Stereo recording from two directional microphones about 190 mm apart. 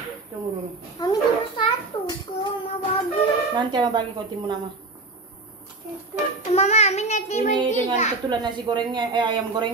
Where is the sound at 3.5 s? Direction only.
25° right (ahead or behind).